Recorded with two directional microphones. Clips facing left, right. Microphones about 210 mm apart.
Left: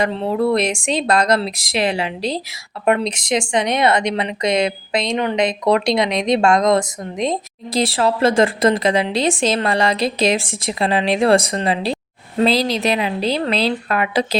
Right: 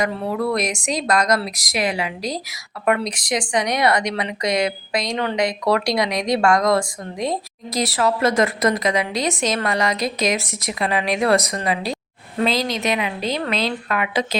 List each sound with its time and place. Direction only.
0.0 s a woman's voice: 25° left (ahead or behind)